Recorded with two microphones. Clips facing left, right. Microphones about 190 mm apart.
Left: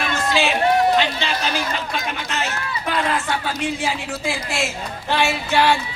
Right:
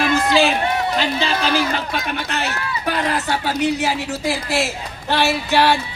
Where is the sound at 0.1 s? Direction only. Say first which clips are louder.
Right 3 dB; 35° right (ahead or behind).